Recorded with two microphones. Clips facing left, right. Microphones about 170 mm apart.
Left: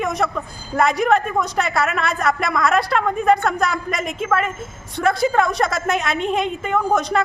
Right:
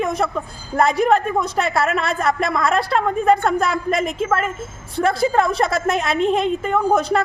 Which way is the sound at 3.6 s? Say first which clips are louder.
Right 2 dB; 30° right (ahead or behind).